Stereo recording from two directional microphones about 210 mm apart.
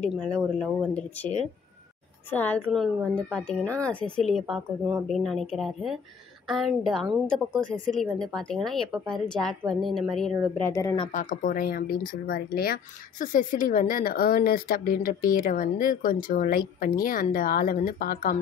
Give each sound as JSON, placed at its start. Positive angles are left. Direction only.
{"t": 0.0, "sound": "a woman's voice", "side_deg": 5}
{"t": 2.3, "sound": "a woman's voice", "side_deg": 5}
{"t": 10.7, "sound": "speech", "side_deg": 15}
{"t": 11.1, "sound": "speech", "side_deg": 35}